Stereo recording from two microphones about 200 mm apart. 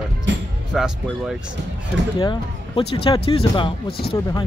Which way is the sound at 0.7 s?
Centre (ahead or behind).